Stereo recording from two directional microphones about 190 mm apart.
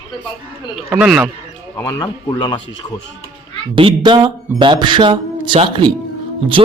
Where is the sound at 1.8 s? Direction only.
20° left (ahead or behind).